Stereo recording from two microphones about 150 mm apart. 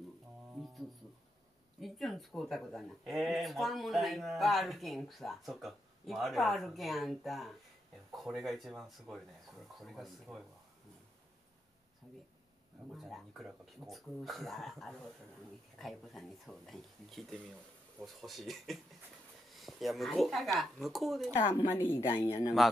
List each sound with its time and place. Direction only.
1.8 s speech: centre (ahead or behind)
12.9 s speech: centre (ahead or behind)
21.5 s speech: 15° left (ahead or behind)